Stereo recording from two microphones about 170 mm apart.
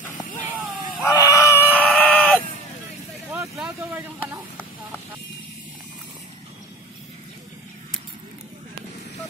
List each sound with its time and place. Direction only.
1.0 s screaming: 15° left (ahead or behind)
3.3 s vehicle: 15° right (ahead or behind)